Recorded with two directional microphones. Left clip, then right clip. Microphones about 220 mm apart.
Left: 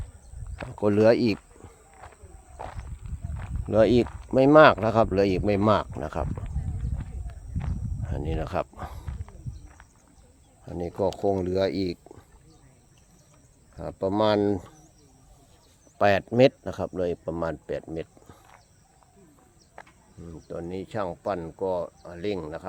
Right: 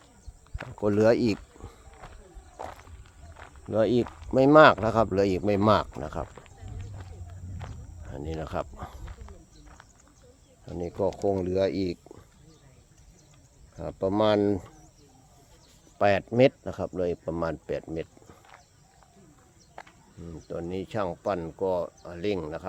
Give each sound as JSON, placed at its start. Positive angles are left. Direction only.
{"t": 0.8, "sound": "speech", "side_deg": 15}
{"t": 1.6, "sound": "walk", "side_deg": -5}
{"t": 2.6, "sound": "wild animals", "side_deg": -10}
{"t": 3.7, "sound": "speech", "side_deg": 25}
{"t": 4.0, "sound": "speech", "side_deg": 10}
{"t": 8.1, "sound": "speech", "side_deg": 25}
{"t": 9.0, "sound": "a sound", "side_deg": -10}
{"t": 10.7, "sound": "speech", "side_deg": 20}
{"t": 13.7, "sound": "speech", "side_deg": 10}
{"t": 16.0, "sound": "speech", "side_deg": 15}
{"t": 19.8, "sound": "cricket", "side_deg": 0}
{"t": 20.3, "sound": "speech", "side_deg": -5}